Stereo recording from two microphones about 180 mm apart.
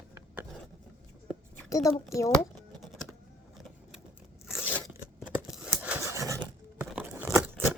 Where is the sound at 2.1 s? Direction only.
15° left (ahead or behind).